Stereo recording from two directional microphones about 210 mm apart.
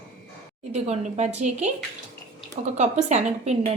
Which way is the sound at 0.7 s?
30° right (ahead or behind).